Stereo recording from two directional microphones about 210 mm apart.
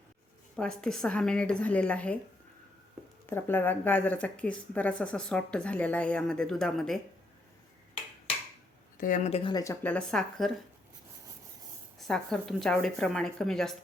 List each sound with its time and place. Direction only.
0.5 s speech: 5° left (ahead or behind)
3.2 s speech: 10° left (ahead or behind)
9.0 s speech: 40° left (ahead or behind); by 10.5 s centre (ahead or behind)
11.9 s speech: centre (ahead or behind)